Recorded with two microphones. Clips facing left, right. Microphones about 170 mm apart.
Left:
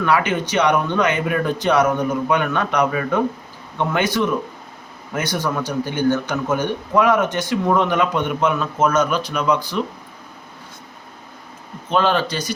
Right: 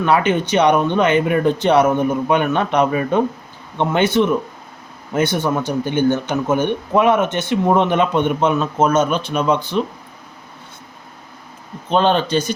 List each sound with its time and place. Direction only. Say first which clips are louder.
0.0 s speech: right 3 dB; 25° right (ahead or behind)
11.9 s speech: right 3 dB; 25° right (ahead or behind)